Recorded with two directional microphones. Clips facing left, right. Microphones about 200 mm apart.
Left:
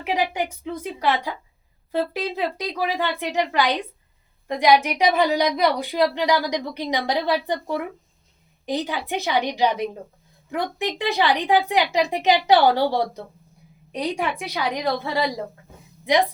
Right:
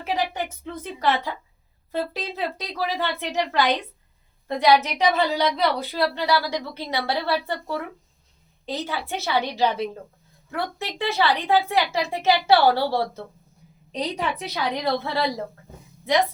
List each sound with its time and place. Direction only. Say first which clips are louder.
0.0 s speech: left 2 dB; 15° left (ahead or behind)